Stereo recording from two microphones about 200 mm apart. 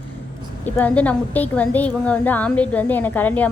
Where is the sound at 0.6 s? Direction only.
5° left (ahead or behind).